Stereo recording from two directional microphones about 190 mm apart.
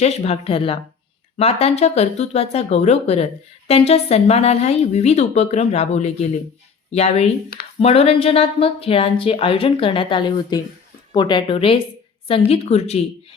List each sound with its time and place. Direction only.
0.0 s speech: 35° left (ahead or behind)